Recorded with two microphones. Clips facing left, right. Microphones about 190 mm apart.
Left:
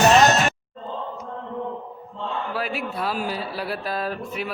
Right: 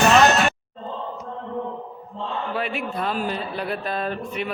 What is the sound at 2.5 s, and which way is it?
A man's voice, centre (ahead or behind).